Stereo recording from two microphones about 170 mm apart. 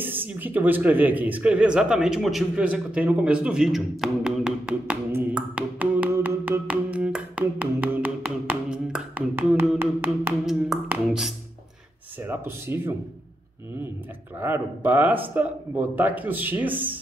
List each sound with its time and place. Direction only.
0.2 s speech: 10° right (ahead or behind)
10.4 s a sound: 5° right (ahead or behind)
12.2 s speech: 15° right (ahead or behind)
14.4 s speech: 10° right (ahead or behind)